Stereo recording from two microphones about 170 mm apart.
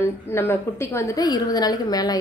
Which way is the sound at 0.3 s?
15° left (ahead or behind).